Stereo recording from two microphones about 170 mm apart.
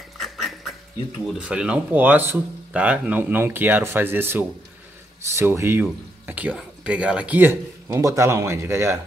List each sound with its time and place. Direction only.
0.2 s duck: centre (ahead or behind)
1.2 s speech: 5° right (ahead or behind)